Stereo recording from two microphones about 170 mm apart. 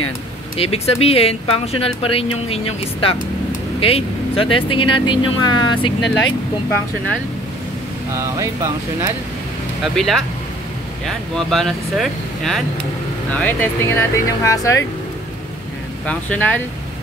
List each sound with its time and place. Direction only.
0.6 s speech: 35° left (ahead or behind)
8.4 s speech: 20° right (ahead or behind)
9.9 s speech: centre (ahead or behind); by 14.9 s 20° left (ahead or behind)
16.1 s speech: 10° left (ahead or behind)